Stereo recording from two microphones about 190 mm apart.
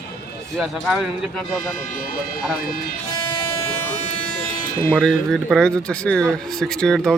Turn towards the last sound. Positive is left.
turn(degrees=0)  # may be behind; listen again after turning